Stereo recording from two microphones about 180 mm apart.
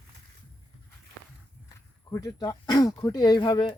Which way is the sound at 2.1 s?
20° left (ahead or behind).